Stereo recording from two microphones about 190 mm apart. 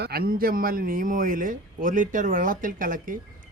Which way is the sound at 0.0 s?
55° right (ahead or behind).